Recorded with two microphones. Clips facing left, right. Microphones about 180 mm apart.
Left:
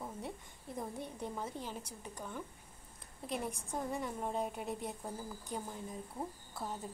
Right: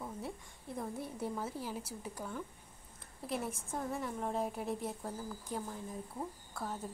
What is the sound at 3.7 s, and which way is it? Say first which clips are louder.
Speech: even; 15° left (ahead or behind).